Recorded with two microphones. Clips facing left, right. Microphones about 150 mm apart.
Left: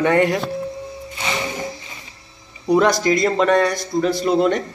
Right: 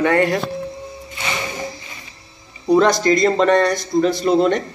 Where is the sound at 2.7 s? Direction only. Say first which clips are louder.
Right 2 dB; 10° left (ahead or behind).